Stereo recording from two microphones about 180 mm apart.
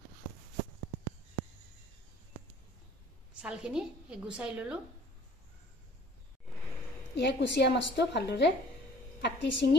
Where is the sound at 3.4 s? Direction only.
5° right (ahead or behind).